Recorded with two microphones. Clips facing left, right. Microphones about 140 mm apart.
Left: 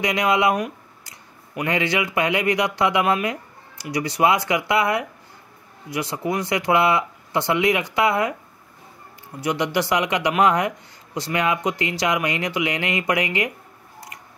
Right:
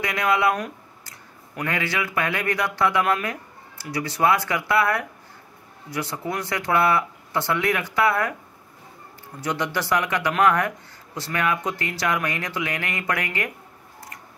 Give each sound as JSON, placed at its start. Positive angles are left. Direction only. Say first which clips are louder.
{"t": 0.0, "sound": "speech", "louder": "left 2 dB", "side_deg": 20}
{"t": 9.4, "sound": "speech", "louder": "left 4 dB", "side_deg": 15}